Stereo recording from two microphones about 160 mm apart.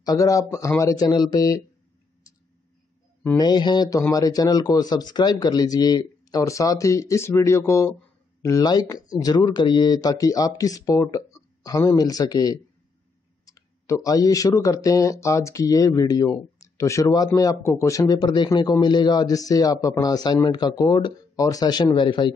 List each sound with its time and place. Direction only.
0.0 s speech: 20° left (ahead or behind)
3.3 s speech: 25° left (ahead or behind)